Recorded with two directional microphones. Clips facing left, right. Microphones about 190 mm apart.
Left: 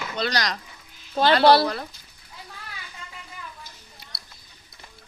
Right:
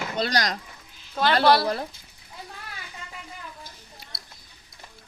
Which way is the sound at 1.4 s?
30° left (ahead or behind).